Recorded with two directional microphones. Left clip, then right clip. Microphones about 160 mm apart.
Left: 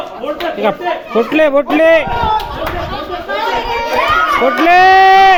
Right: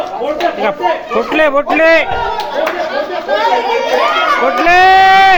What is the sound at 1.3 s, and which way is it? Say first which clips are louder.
Speech: even; 50° left (ahead or behind).